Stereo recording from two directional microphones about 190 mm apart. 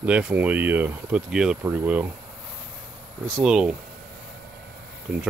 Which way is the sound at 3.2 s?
Centre (ahead or behind).